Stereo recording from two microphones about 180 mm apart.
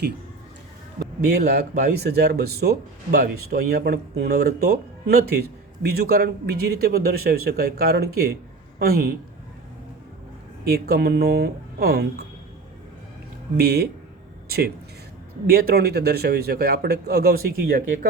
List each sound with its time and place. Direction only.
0.9 s speech: 60° right (ahead or behind)
10.7 s speech: 60° right (ahead or behind)
13.6 s speech: 60° right (ahead or behind)